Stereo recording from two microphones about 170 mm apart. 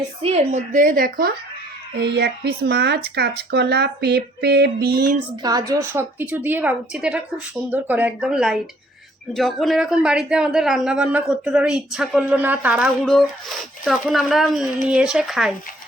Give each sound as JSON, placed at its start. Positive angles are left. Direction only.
{"t": 0.2, "sound": "speech", "side_deg": -35}
{"t": 2.0, "sound": "speech", "side_deg": -75}
{"t": 5.4, "sound": "a woman's voice", "side_deg": -20}